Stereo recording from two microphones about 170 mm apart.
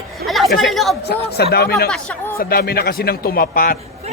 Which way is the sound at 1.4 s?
70° left (ahead or behind).